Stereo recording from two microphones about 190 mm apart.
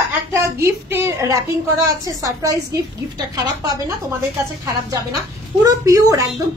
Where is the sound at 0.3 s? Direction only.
15° right (ahead or behind).